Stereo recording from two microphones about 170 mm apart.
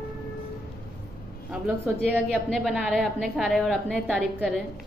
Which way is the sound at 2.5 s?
Centre (ahead or behind).